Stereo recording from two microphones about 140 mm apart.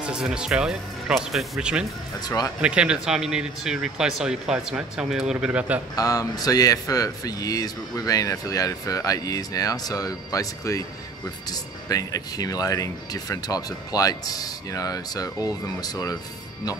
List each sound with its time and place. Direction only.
0.0 s speech: 5° right (ahead or behind)
2.2 s speech: 25° left (ahead or behind)
2.6 s speech: 5° right (ahead or behind)
5.9 s speech: 25° left (ahead or behind)